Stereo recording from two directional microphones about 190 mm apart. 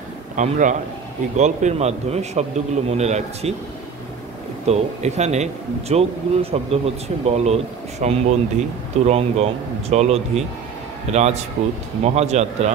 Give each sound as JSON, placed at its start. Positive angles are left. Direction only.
{"t": 0.4, "sound": "a man's voice", "side_deg": -40}
{"t": 4.6, "sound": "a man's voice", "side_deg": -35}